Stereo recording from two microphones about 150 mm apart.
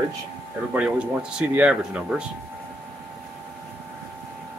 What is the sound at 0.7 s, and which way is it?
Speech, 10° right (ahead or behind).